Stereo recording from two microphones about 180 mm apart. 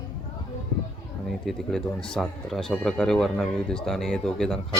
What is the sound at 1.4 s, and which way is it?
Speech, centre (ahead or behind).